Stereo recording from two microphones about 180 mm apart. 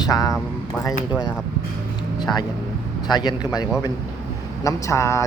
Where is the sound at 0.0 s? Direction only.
20° left (ahead or behind).